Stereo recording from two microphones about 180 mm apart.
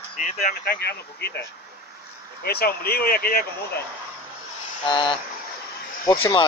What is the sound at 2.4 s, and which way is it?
Speech, 60° left (ahead or behind).